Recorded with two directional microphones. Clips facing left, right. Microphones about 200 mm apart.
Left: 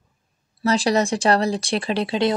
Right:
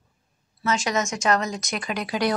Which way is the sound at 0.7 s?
35° left (ahead or behind).